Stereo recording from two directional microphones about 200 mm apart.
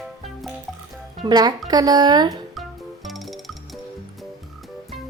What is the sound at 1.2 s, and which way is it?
Speech, 20° right (ahead or behind).